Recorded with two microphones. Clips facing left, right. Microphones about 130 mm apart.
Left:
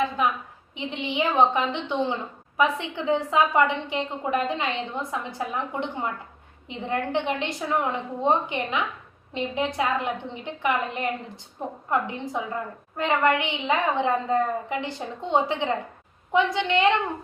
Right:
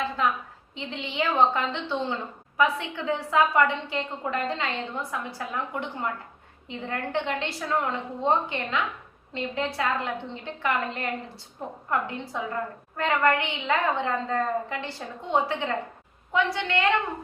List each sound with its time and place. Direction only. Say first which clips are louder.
0.2 s a woman's voice: left 1 dB; 15° left (ahead or behind)